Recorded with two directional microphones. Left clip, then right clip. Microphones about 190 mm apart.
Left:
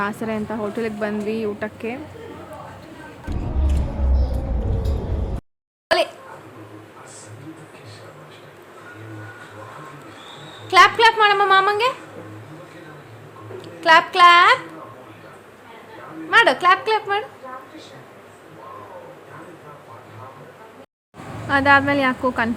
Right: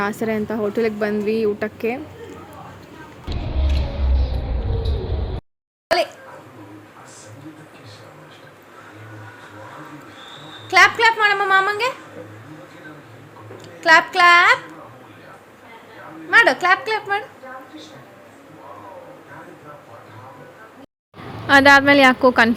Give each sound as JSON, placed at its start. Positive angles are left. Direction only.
{"t": 0.0, "sound": "a woman's voice", "side_deg": -15}
{"t": 5.9, "sound": "a sound", "side_deg": 0}
{"t": 10.7, "sound": "a sound", "side_deg": 5}
{"t": 13.6, "sound": "a woman's voice", "side_deg": 5}
{"t": 16.3, "sound": "a woman's voice", "side_deg": 0}
{"t": 21.4, "sound": "a woman's voice", "side_deg": -25}